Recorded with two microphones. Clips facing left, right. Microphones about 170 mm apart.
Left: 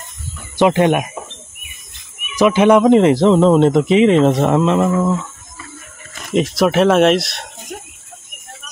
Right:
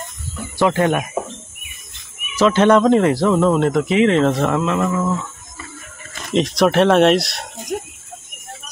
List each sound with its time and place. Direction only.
0.6 s speech: 20° left (ahead or behind)
2.3 s speech: 10° left (ahead or behind)
2.9 s speech: 20° left (ahead or behind)
6.3 s speech: 5° left (ahead or behind)